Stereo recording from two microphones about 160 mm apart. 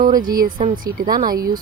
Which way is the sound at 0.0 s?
60° right (ahead or behind).